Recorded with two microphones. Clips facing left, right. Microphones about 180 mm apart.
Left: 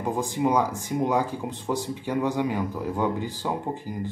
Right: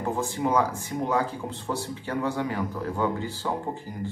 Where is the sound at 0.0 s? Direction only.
15° left (ahead or behind).